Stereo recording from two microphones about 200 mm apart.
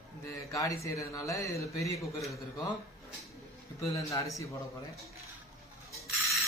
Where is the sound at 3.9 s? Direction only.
15° left (ahead or behind).